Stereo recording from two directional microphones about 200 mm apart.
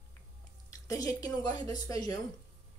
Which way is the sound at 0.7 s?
15° left (ahead or behind).